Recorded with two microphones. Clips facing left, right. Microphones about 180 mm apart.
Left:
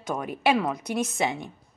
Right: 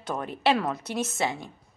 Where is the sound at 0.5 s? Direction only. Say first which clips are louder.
Left 2 dB; 5° right (ahead or behind).